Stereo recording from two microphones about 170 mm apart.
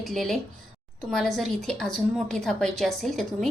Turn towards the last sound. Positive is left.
turn(degrees=0)  # may be behind; listen again after turning